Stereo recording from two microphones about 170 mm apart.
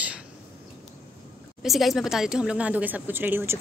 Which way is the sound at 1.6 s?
Centre (ahead or behind).